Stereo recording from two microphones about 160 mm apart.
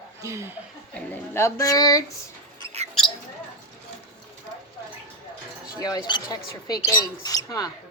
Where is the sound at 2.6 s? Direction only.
40° right (ahead or behind).